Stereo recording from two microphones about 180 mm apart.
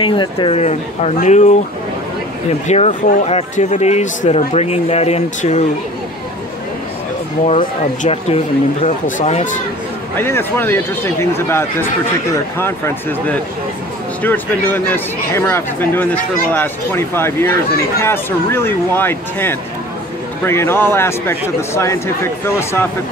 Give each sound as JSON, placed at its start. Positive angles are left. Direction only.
{"t": 0.0, "sound": "speech", "side_deg": 25}
{"t": 2.7, "sound": "speech", "side_deg": 40}
{"t": 7.4, "sound": "speech", "side_deg": 35}
{"t": 10.1, "sound": "speech", "side_deg": 10}